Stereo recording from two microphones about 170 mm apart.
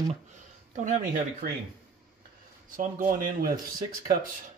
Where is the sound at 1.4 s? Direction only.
65° right (ahead or behind).